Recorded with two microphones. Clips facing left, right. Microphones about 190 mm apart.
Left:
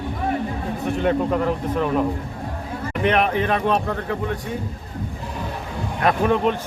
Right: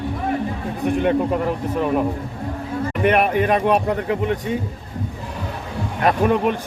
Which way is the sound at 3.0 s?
10° right (ahead or behind).